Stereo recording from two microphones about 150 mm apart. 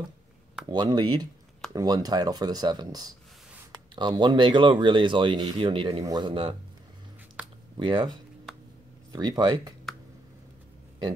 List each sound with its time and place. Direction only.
0.7 s speech: 25° right (ahead or behind)
7.7 s speech: 35° right (ahead or behind)